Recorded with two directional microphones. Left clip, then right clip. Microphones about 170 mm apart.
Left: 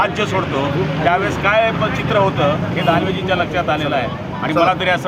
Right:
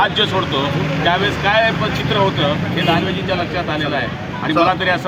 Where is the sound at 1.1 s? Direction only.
10° left (ahead or behind).